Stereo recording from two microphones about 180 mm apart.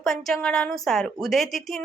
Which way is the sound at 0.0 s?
Centre (ahead or behind).